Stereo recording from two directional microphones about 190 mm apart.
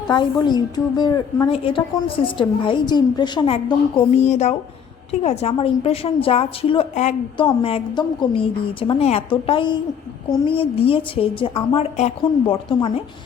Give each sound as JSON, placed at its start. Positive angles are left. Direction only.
{"t": 0.1, "sound": "a woman's voice", "side_deg": 25}